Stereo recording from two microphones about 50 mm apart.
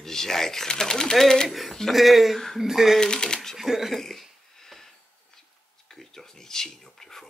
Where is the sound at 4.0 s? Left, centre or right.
Centre.